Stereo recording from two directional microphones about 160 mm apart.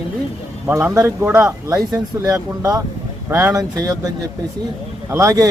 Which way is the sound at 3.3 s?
10° right (ahead or behind).